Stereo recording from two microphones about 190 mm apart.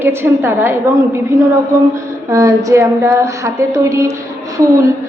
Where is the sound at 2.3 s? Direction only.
15° right (ahead or behind).